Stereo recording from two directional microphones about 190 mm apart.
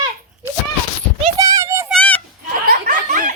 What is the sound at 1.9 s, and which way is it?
Honk, 5° left (ahead or behind).